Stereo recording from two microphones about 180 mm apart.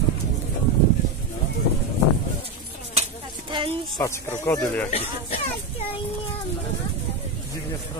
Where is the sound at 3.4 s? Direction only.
25° right (ahead or behind).